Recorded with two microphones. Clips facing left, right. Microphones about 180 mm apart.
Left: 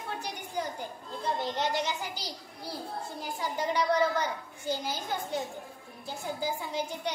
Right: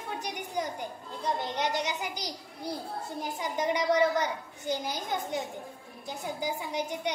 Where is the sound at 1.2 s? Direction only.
20° right (ahead or behind).